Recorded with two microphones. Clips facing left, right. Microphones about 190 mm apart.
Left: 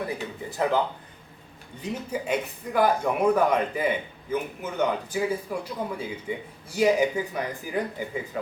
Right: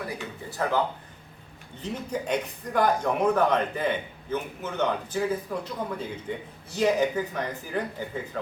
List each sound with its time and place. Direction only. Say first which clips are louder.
0.5 s a man's voice: left 3 dB; 20° left (ahead or behind)
1.8 s a man's voice: even; 10° left (ahead or behind)